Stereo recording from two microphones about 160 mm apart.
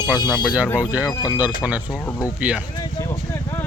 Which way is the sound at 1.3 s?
10° right (ahead or behind).